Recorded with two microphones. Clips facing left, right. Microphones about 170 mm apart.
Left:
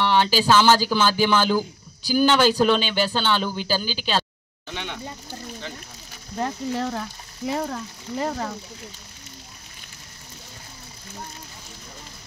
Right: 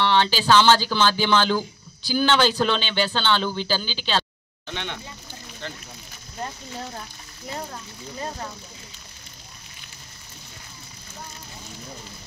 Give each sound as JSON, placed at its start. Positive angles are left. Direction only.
{"t": 0.0, "sound": "speech", "side_deg": 10}
{"t": 6.3, "sound": "speech", "side_deg": 65}